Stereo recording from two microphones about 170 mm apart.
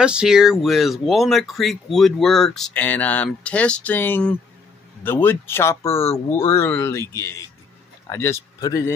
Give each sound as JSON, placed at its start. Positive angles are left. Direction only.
{"t": 0.0, "sound": "speech", "side_deg": -5}